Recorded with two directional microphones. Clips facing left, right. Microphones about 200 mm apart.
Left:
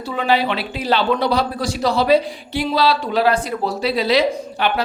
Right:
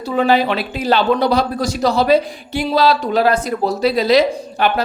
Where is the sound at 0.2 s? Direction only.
45° right (ahead or behind).